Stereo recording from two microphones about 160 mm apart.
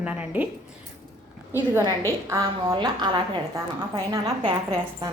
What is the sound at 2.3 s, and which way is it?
A woman's voice, 20° right (ahead or behind).